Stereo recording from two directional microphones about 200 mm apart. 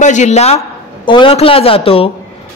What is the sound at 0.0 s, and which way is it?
Speech, 35° left (ahead or behind).